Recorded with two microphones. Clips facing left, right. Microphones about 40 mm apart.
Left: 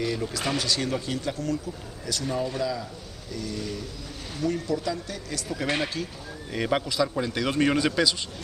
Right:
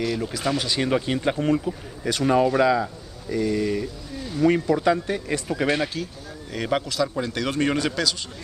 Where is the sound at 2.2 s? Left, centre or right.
Right.